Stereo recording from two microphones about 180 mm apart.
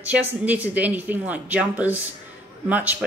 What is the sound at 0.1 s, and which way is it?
Speech, 10° right (ahead or behind).